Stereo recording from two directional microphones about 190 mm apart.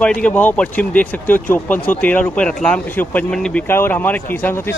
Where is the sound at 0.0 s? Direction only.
5° left (ahead or behind).